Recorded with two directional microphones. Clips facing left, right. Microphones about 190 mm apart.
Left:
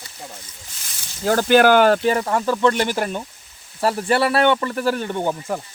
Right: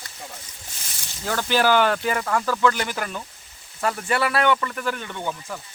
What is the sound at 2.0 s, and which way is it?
Speech, 30° left (ahead or behind).